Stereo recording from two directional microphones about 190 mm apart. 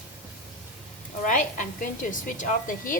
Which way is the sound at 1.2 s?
45° left (ahead or behind).